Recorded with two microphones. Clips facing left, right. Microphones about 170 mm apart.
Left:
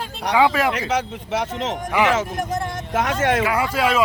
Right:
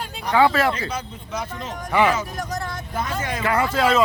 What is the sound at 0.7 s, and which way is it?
Speech, 85° left.